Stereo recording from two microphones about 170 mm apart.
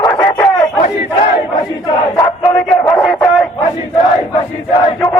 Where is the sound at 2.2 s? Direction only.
5° left (ahead or behind).